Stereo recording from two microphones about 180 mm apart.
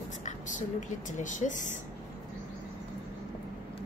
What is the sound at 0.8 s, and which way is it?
A woman's voice, 45° left (ahead or behind).